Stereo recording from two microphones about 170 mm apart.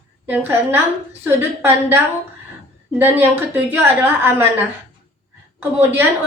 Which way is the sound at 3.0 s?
10° right (ahead or behind).